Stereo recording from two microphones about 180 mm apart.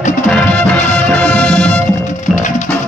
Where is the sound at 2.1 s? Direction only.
40° left (ahead or behind).